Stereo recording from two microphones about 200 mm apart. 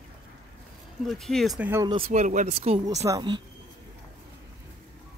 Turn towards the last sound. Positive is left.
turn(degrees=-20)  # may be behind; listen again after turning